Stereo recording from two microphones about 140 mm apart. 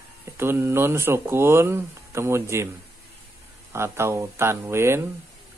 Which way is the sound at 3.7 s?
20° right (ahead or behind).